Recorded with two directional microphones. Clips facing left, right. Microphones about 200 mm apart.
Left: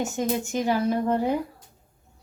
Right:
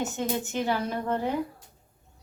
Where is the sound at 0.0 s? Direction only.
15° left (ahead or behind).